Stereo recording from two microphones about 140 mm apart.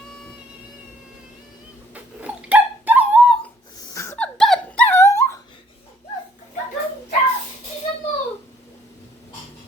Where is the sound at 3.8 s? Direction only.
25° left (ahead or behind).